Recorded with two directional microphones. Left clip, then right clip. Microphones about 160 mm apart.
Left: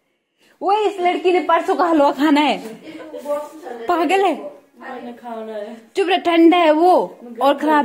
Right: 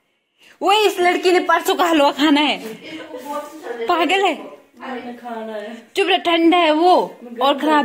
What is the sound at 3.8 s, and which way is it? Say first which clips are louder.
Speech: even; 40° left (ahead or behind).